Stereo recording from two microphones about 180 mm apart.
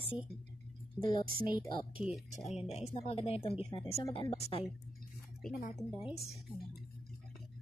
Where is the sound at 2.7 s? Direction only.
35° left (ahead or behind).